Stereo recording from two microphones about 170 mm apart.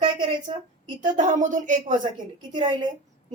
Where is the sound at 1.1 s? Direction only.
50° right (ahead or behind).